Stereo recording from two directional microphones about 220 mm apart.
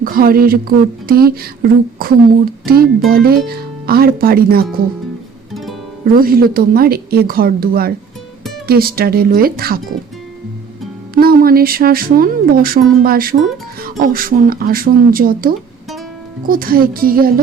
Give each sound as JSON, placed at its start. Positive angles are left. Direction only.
{"t": 0.0, "sound": "speech", "side_deg": -40}
{"t": 6.1, "sound": "speech", "side_deg": -40}
{"t": 11.1, "sound": "speech", "side_deg": -45}